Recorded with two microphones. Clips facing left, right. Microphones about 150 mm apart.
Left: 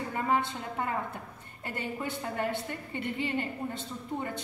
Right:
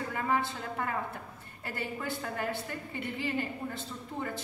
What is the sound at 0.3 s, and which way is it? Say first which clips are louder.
A woman's voice: left 2 dB; 20° left (ahead or behind).